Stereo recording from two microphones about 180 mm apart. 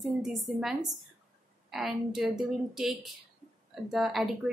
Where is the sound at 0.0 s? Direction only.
Centre (ahead or behind).